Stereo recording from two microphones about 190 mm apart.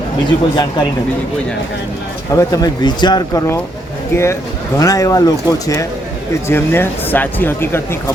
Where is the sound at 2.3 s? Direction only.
20° left (ahead or behind).